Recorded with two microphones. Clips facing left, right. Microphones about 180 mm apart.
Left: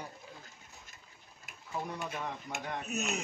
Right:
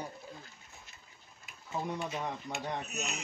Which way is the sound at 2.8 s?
50° left (ahead or behind).